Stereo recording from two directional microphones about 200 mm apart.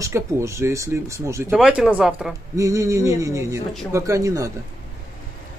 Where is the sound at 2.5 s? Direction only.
15° right (ahead or behind).